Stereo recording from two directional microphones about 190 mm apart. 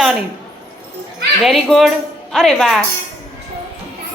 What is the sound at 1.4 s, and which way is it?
A woman's voice, centre (ahead or behind).